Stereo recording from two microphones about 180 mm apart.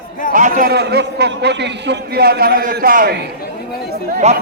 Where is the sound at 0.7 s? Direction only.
65° right (ahead or behind).